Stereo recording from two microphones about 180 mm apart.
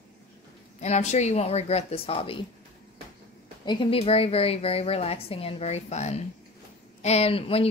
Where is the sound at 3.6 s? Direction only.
30° left (ahead or behind).